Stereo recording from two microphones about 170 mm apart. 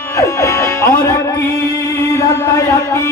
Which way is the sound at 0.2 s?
15° left (ahead or behind).